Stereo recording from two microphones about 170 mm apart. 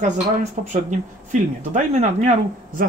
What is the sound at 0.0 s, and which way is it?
Speech, 45° right (ahead or behind).